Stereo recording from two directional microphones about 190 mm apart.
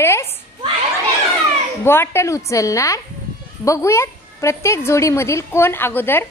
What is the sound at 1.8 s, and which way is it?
A woman's voice, 15° left (ahead or behind).